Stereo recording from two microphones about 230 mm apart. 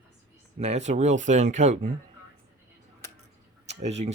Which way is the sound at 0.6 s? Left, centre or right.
Right.